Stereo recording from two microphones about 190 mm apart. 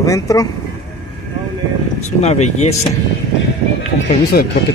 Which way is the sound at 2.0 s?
35° left (ahead or behind).